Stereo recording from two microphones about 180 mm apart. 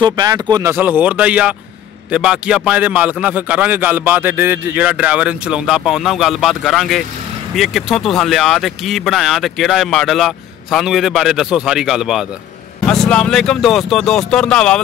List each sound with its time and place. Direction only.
0.0 s a man's voice: 20° right (ahead or behind); by 14.8 s 5° left (ahead or behind)